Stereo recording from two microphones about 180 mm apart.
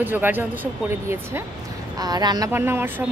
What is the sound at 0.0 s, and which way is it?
Speech, 10° right (ahead or behind).